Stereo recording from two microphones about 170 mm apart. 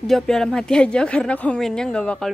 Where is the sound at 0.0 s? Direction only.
Centre (ahead or behind).